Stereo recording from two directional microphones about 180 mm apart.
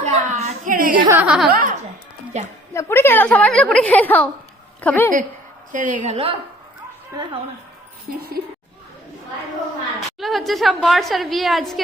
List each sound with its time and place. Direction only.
0.0 s a sound: 40° right (ahead or behind)
1.1 s speech: 5° right (ahead or behind)
1.5 s a woman's voice: 50° right (ahead or behind)
2.3 s a woman's voice: 35° right (ahead or behind)
2.7 s a woman's voice: 15° left (ahead or behind)
5.7 s a woman's voice: 45° right (ahead or behind)
10.2 s a woman's voice: centre (ahead or behind)